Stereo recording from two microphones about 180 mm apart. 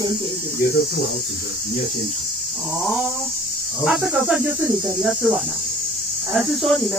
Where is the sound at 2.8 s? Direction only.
Centre (ahead or behind).